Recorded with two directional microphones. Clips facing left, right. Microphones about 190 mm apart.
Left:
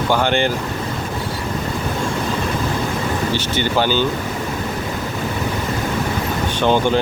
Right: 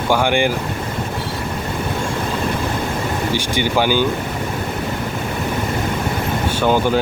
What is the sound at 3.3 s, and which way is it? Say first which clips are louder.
Speech: right 2 dB; 10° right (ahead or behind).